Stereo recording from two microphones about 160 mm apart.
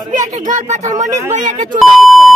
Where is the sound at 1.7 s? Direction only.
Centre (ahead or behind).